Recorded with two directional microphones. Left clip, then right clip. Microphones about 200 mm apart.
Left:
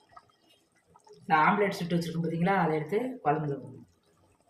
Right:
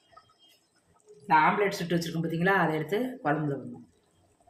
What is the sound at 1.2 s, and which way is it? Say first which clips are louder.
Speech: right 1 dB; 40° right (ahead or behind).